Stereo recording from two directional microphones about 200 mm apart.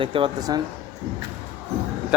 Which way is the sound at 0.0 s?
25° right (ahead or behind).